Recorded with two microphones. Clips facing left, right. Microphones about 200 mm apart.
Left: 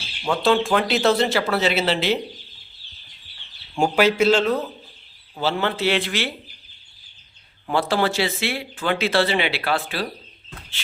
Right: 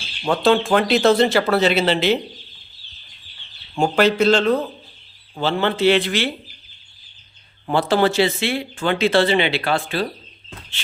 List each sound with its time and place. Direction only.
0.4 s speech: centre (ahead or behind)
3.8 s speech: 10° left (ahead or behind)
7.7 s speech: centre (ahead or behind)